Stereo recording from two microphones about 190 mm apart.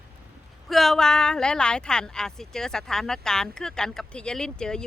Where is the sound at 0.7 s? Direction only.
Centre (ahead or behind).